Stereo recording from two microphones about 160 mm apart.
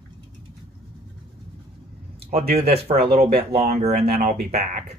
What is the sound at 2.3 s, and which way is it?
Speech, 40° right (ahead or behind).